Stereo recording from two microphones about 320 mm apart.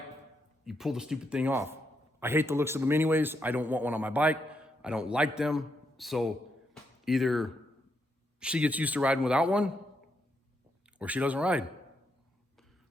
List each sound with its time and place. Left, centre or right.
0.6 s speech: centre
10.9 s speech: centre